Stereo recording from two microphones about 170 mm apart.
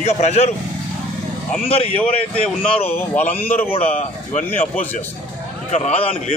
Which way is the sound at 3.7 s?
40° left (ahead or behind).